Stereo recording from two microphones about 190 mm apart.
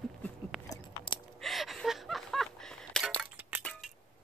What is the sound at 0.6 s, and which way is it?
Chewing, 25° left (ahead or behind).